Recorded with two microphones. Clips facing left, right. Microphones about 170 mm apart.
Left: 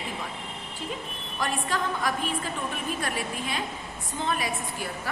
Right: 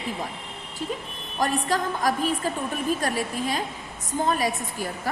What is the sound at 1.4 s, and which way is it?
A woman's voice, 40° right (ahead or behind).